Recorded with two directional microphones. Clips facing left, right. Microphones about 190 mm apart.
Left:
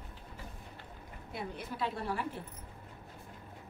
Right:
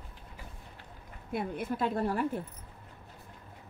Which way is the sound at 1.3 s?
50° right (ahead or behind).